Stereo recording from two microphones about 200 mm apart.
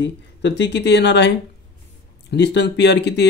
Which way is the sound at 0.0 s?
60° left (ahead or behind).